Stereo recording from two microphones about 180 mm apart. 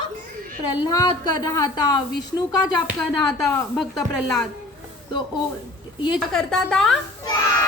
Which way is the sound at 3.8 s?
Centre (ahead or behind).